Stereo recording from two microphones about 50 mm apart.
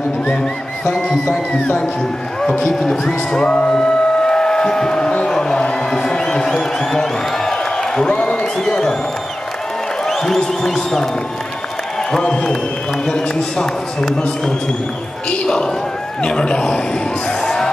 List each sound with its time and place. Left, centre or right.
0.4 s music: centre
1.5 s speech: left
2.7 s music: centre
8.5 s speech: centre
10.0 s speech: centre
12.1 s speech: centre
15.2 s speech: left
17.4 s music: centre